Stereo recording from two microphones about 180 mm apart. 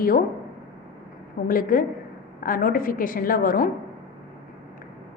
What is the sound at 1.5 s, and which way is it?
A woman's voice, 50° left (ahead or behind).